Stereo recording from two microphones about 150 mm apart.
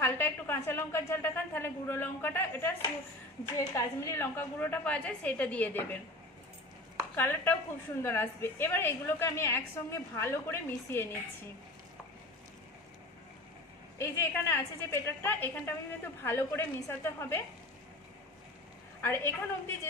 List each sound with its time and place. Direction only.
0.0 s a woman's voice: 15° left (ahead or behind)
7.2 s a woman's voice: 15° left (ahead or behind)
13.9 s a woman's voice: 20° left (ahead or behind)
18.9 s a woman's voice: 15° left (ahead or behind)